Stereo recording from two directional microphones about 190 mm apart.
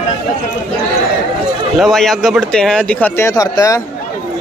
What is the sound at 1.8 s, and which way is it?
Speech, centre (ahead or behind).